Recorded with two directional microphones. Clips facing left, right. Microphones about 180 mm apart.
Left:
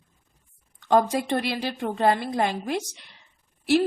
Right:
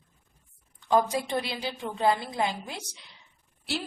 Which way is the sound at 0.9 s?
60° left (ahead or behind).